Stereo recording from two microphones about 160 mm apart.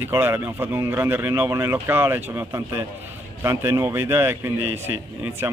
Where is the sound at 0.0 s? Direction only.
15° right (ahead or behind).